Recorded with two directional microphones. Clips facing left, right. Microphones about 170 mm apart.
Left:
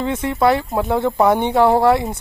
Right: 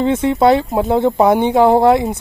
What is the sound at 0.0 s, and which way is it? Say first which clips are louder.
Speech: right 4 dB; 20° right (ahead or behind).